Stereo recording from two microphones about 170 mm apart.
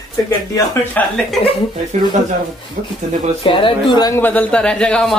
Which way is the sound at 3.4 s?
30° left (ahead or behind).